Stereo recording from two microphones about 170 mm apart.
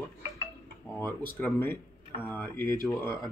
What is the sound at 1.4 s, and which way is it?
Speech, 15° left (ahead or behind).